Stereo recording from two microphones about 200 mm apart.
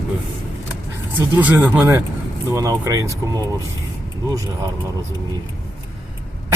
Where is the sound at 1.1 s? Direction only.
10° right (ahead or behind).